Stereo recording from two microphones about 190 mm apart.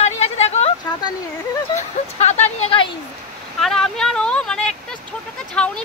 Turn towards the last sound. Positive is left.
turn(degrees=5)  # may be behind; listen again after turning